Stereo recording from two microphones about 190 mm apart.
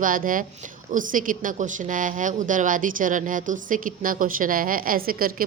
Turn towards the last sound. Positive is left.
turn(degrees=-50)  # may be behind; listen again after turning